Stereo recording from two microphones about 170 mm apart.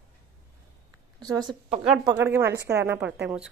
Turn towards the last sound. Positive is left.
turn(degrees=-5)  # may be behind; listen again after turning